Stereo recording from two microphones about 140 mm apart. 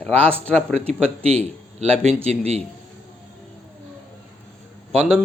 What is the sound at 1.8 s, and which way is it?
Speech, 50° right (ahead or behind).